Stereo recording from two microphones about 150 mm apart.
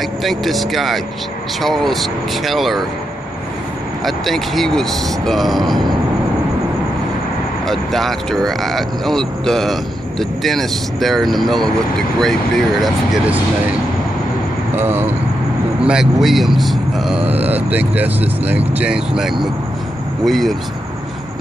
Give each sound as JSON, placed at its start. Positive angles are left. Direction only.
{"t": 0.2, "sound": "speech", "side_deg": 0}
{"t": 4.0, "sound": "speech", "side_deg": 0}
{"t": 7.6, "sound": "speech", "side_deg": 0}
{"t": 14.8, "sound": "speech", "side_deg": -15}
{"t": 15.9, "sound": "vehicle", "side_deg": -5}
{"t": 17.6, "sound": "speech", "side_deg": -10}